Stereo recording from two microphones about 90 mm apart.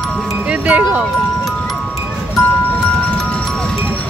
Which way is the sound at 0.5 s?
15° right (ahead or behind).